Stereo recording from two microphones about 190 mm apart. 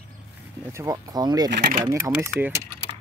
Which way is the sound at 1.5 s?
50° right (ahead or behind).